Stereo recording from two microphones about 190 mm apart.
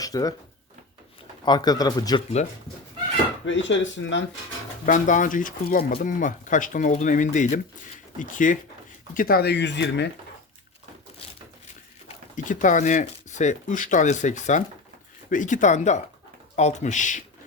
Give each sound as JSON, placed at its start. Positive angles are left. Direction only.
{"t": 0.0, "sound": "speech", "side_deg": 20}
{"t": 1.5, "sound": "speech", "side_deg": 20}
{"t": 3.4, "sound": "speech", "side_deg": 75}
{"t": 4.9, "sound": "speech", "side_deg": 40}
{"t": 12.0, "sound": "speech", "side_deg": 40}